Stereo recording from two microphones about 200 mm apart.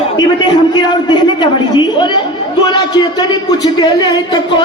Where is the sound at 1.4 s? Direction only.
25° left (ahead or behind).